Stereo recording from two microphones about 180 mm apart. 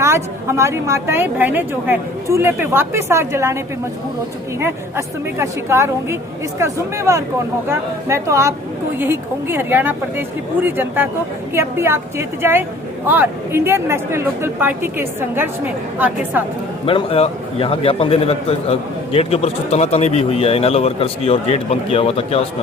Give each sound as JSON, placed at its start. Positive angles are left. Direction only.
{"t": 0.0, "sound": "a woman's voice", "side_deg": -15}
{"t": 4.6, "sound": "a woman's voice", "side_deg": -15}
{"t": 16.8, "sound": "a man's voice", "side_deg": 30}